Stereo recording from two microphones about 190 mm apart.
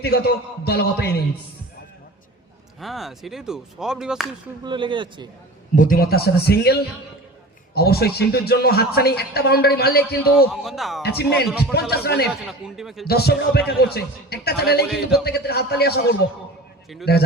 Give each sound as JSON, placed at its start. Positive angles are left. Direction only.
{"t": 0.0, "sound": "speech", "side_deg": 55}
{"t": 2.8, "sound": "speech", "side_deg": 0}
{"t": 4.6, "sound": "speech", "side_deg": -25}
{"t": 5.7, "sound": "speech", "side_deg": 45}
{"t": 10.5, "sound": "speech", "side_deg": 0}
{"t": 11.0, "sound": "speech", "side_deg": 60}
{"t": 12.3, "sound": "speech", "side_deg": 0}
{"t": 13.1, "sound": "speech", "side_deg": 55}
{"t": 14.8, "sound": "speech", "side_deg": 0}
{"t": 15.2, "sound": "speech", "side_deg": 55}